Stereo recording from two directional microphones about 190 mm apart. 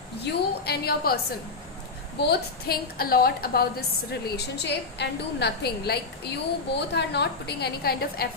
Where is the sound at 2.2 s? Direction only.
55° left (ahead or behind).